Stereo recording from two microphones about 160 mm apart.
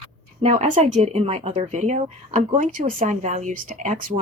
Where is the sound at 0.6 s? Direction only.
50° right (ahead or behind).